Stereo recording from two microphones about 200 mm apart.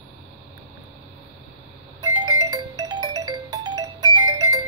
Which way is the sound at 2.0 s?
20° right (ahead or behind).